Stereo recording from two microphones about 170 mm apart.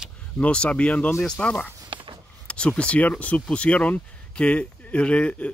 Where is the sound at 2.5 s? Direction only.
5° left (ahead or behind).